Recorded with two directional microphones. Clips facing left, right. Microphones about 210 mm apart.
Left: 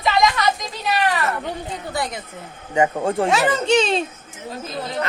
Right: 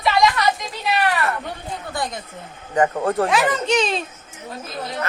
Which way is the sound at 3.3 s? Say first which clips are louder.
Left 2 dB; 25° left (ahead or behind).